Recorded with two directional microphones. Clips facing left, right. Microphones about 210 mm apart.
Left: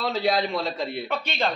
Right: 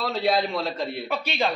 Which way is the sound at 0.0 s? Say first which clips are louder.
Even; centre (ahead or behind).